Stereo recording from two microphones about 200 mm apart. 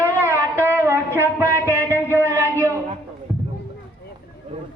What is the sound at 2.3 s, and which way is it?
Speech, 15° right (ahead or behind).